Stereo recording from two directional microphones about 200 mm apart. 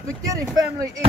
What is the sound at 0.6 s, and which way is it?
Speech, 15° right (ahead or behind).